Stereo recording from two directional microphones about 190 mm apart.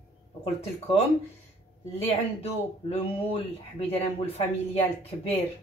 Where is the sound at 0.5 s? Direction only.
35° left (ahead or behind).